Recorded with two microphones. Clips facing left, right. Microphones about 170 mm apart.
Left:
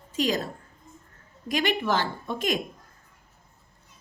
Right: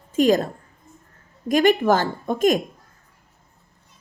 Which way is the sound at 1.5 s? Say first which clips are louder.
Right 9 dB; 45° right (ahead or behind).